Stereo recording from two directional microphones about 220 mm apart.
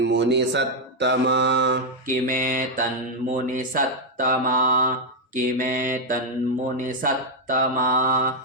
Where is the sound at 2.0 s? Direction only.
40° right (ahead or behind).